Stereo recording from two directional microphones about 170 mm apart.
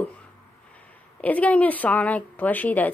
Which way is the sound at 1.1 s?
10° left (ahead or behind).